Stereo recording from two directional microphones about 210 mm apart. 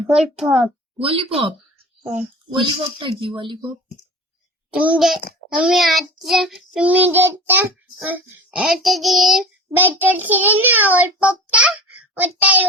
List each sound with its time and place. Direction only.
0.1 s child singing: centre (ahead or behind)
2.0 s speech: 30° right (ahead or behind)
4.7 s child singing: 5° right (ahead or behind)